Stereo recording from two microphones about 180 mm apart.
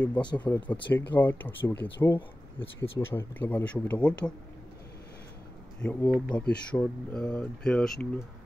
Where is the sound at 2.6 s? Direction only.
30° left (ahead or behind).